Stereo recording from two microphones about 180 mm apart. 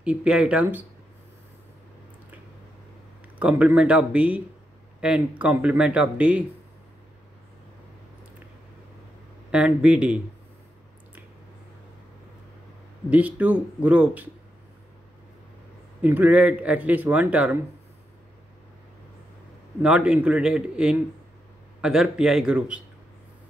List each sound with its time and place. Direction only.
0.0 s speech: 5° right (ahead or behind)
3.3 s speech: 5° right (ahead or behind)
9.5 s speech: 5° right (ahead or behind)
13.1 s speech: 10° right (ahead or behind)
16.0 s speech: 10° right (ahead or behind)
19.8 s speech: 5° right (ahead or behind)